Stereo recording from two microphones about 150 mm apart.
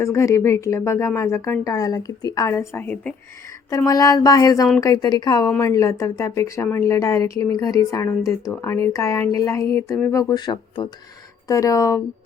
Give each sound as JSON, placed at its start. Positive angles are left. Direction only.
{"t": 0.0, "sound": "speech", "side_deg": 20}
{"t": 3.7, "sound": "speech", "side_deg": 25}